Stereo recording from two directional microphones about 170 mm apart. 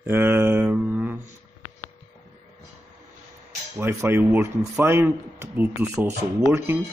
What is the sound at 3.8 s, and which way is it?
Speech, 15° right (ahead or behind).